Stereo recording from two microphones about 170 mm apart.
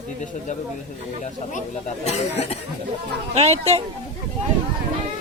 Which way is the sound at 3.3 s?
35° right (ahead or behind).